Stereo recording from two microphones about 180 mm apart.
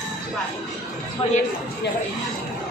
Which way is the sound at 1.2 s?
35° left (ahead or behind).